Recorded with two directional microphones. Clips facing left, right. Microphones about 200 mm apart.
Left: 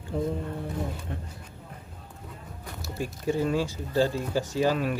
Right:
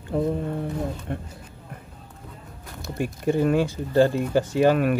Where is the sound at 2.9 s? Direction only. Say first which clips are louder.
Right 5 dB; 60° right (ahead or behind).